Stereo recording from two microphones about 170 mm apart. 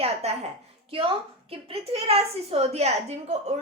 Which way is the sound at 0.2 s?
40° right (ahead or behind).